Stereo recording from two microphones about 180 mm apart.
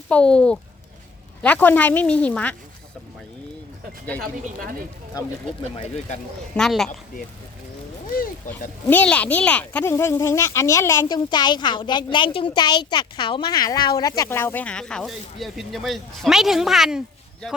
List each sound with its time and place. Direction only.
0.1 s speech: 5° left (ahead or behind)
5.7 s speech: 35° left (ahead or behind)
6.6 s speech: centre (ahead or behind)
8.4 s speech: 45° left (ahead or behind)
8.9 s speech: 10° left (ahead or behind)